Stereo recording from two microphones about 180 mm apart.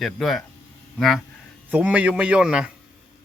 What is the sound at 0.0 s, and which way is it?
Speech, centre (ahead or behind).